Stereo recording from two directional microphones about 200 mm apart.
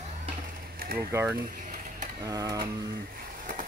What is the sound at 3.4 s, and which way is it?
Vehicle, 40° right (ahead or behind).